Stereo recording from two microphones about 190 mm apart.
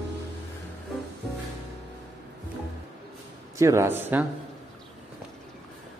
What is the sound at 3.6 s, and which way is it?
Speech, 15° right (ahead or behind).